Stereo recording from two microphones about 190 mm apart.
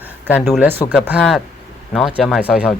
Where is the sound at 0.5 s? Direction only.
10° right (ahead or behind).